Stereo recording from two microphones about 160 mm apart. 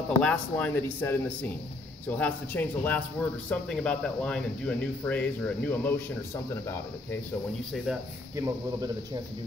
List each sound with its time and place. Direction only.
0.2 s speech: 10° left (ahead or behind)
8.4 s speech: 20° right (ahead or behind)